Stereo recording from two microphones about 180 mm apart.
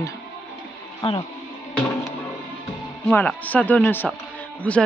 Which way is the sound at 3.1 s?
5° left (ahead or behind).